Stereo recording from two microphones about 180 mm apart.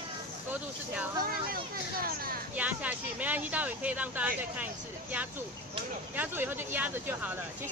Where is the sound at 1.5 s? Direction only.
55° right (ahead or behind).